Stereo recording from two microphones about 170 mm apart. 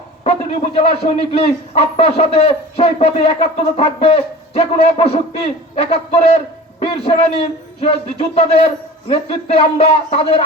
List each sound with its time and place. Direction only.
0.3 s a man's voice: 35° left (ahead or behind)